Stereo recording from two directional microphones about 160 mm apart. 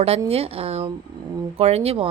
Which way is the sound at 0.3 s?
40° right (ahead or behind).